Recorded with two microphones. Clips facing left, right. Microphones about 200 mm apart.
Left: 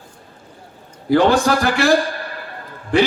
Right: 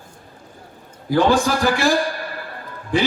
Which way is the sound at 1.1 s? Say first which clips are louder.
Left 3 dB; 65° left (ahead or behind).